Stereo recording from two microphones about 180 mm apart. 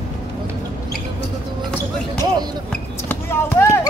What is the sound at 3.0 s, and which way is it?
Basketball bounce, 15° left (ahead or behind).